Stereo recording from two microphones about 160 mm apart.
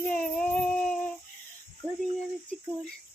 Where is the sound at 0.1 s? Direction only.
5° left (ahead or behind).